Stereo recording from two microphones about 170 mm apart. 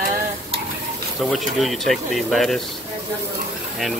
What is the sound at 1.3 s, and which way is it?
Speech, centre (ahead or behind).